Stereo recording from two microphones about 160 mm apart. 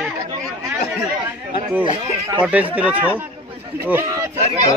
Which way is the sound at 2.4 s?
10° right (ahead or behind).